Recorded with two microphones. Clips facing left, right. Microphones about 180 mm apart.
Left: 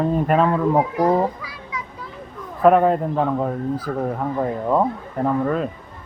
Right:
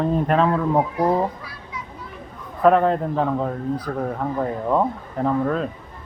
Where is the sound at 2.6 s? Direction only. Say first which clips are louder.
Left 2 dB; 5° left (ahead or behind).